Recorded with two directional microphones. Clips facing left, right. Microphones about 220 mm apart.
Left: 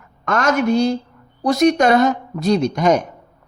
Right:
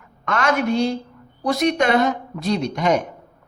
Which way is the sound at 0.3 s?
45° left (ahead or behind).